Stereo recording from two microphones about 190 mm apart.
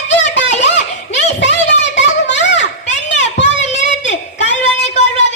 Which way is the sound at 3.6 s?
35° left (ahead or behind).